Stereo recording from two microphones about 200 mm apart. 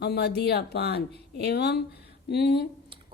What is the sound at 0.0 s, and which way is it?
A woman's voice, 55° left (ahead or behind).